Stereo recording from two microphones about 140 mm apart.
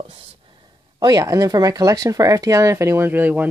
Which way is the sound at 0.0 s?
45° right (ahead or behind).